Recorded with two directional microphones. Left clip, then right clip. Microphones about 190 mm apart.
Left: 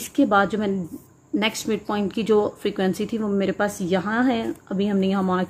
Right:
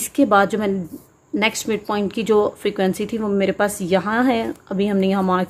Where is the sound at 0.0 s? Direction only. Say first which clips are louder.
Right 4 dB; 15° right (ahead or behind).